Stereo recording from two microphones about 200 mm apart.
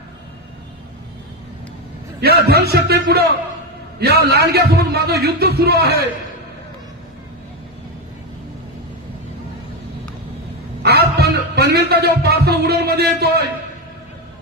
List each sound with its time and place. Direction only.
2.2 s speech: 55° right (ahead or behind)
10.8 s music: 55° right (ahead or behind)